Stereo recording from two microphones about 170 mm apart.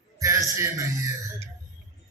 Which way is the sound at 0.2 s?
15° right (ahead or behind).